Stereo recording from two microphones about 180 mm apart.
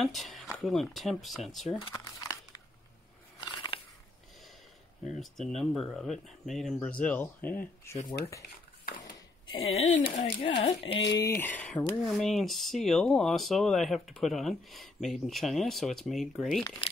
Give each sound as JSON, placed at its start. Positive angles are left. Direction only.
{"t": 0.0, "sound": "speech", "side_deg": 0}
{"t": 1.8, "sound": "crumpling", "side_deg": 20}
{"t": 3.3, "sound": "biting", "side_deg": 25}
{"t": 5.2, "sound": "speech", "side_deg": 0}
{"t": 9.5, "sound": "speech", "side_deg": 35}
{"t": 11.1, "sound": "speech", "side_deg": 20}